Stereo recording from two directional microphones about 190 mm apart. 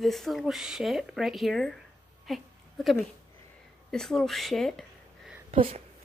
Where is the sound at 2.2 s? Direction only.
Centre (ahead or behind).